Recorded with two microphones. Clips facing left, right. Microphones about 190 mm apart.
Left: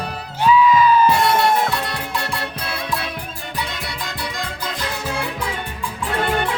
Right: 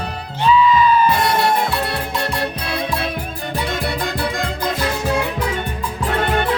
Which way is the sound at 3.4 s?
50° right (ahead or behind).